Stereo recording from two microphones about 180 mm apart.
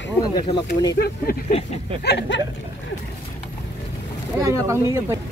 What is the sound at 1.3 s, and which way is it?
Speech, 55° left (ahead or behind).